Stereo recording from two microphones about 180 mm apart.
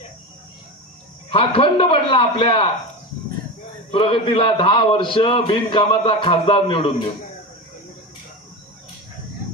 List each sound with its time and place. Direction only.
1.3 s a man's voice: 30° left (ahead or behind)
3.9 s a man's voice: 30° left (ahead or behind)